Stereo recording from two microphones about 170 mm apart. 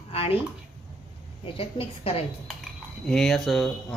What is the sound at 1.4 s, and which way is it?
Speech, 35° left (ahead or behind).